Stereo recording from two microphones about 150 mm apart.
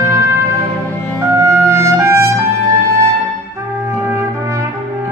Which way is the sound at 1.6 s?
20° right (ahead or behind).